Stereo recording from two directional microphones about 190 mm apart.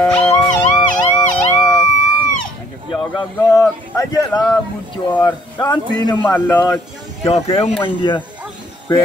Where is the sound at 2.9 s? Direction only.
20° left (ahead or behind).